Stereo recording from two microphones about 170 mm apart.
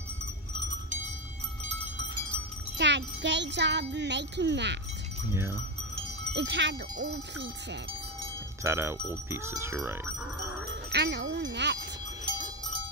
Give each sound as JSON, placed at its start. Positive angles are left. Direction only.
{"t": 2.8, "sound": "wind chime", "side_deg": -90}
{"t": 5.3, "sound": "speech", "side_deg": -15}
{"t": 6.3, "sound": "wind chime", "side_deg": -90}
{"t": 8.6, "sound": "speech", "side_deg": -15}
{"t": 10.7, "sound": "wind chime", "side_deg": -80}